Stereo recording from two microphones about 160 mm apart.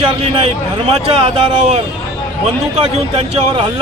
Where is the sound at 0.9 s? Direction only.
40° right (ahead or behind).